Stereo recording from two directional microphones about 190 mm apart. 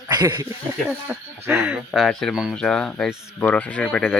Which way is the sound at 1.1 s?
5° right (ahead or behind).